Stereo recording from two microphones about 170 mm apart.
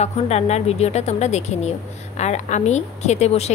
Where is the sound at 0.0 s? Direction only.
40° left (ahead or behind).